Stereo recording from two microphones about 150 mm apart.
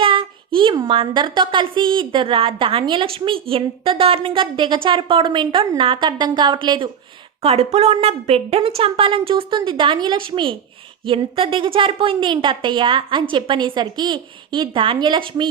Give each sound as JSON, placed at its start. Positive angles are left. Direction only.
{"t": 0.0, "sound": "a sound", "side_deg": -35}
{"t": 0.9, "sound": "a woman's voice", "side_deg": -30}
{"t": 7.4, "sound": "a woman's voice", "side_deg": -45}